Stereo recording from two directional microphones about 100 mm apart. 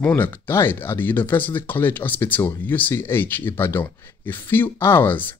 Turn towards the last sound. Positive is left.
turn(degrees=20)  # may be behind; listen again after turning